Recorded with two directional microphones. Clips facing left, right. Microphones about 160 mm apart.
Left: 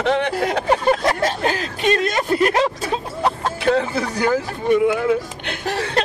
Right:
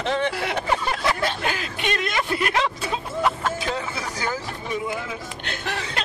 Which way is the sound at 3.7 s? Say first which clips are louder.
Left 10 dB; 60° left (ahead or behind).